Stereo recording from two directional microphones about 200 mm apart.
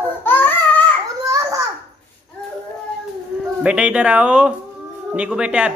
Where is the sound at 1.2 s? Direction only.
15° right (ahead or behind).